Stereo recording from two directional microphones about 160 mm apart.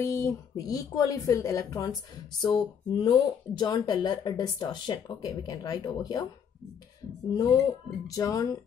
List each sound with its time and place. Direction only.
0.0 s speech: 15° left (ahead or behind)
7.3 s speech: 20° left (ahead or behind)